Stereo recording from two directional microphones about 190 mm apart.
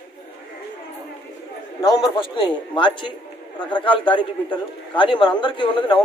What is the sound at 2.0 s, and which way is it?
A man's voice, 25° left (ahead or behind).